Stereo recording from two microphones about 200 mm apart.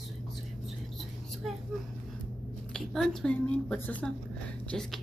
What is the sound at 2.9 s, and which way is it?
A woman's voice, 5° left (ahead or behind).